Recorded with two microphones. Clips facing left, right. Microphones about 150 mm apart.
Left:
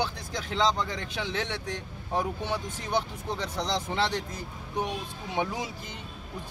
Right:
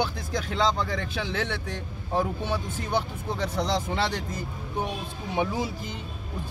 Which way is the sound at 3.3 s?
10° right (ahead or behind).